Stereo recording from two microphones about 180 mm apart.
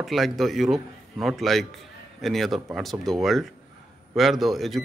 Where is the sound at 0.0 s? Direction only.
Centre (ahead or behind).